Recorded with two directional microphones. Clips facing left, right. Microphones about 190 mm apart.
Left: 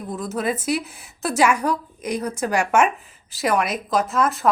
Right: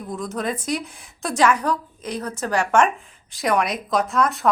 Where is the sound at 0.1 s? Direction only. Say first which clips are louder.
Left 2 dB; 5° left (ahead or behind).